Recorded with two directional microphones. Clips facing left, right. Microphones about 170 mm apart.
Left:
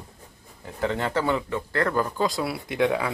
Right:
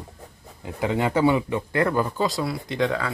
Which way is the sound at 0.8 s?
10° right (ahead or behind).